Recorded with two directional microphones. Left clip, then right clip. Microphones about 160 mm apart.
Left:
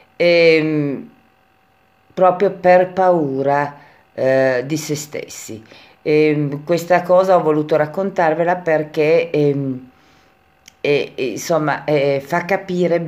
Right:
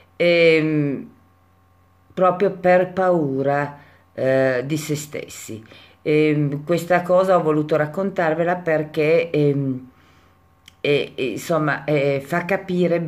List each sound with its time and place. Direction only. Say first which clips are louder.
0.2 s speech: left 3 dB; 15° right (ahead or behind)
2.1 s speech: left 4 dB; 15° right (ahead or behind)